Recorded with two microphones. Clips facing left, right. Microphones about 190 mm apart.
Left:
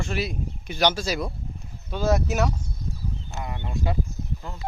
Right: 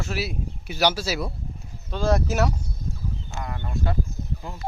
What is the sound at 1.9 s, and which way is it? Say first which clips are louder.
Speech: even; 5° left (ahead or behind).